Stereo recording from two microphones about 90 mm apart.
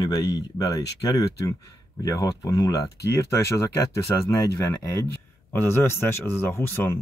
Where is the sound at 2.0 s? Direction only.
40° left (ahead or behind).